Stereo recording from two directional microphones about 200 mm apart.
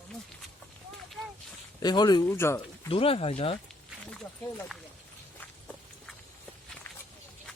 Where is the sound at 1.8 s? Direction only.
20° left (ahead or behind).